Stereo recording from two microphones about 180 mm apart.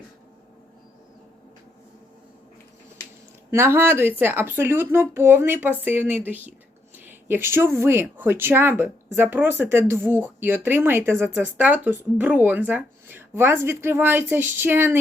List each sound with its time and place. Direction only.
3.5 s speech: 15° right (ahead or behind)